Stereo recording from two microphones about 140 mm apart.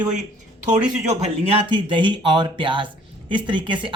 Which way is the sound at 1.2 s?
45° right (ahead or behind).